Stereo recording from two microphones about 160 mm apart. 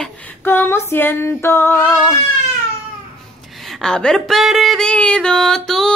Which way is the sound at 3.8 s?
5° left (ahead or behind).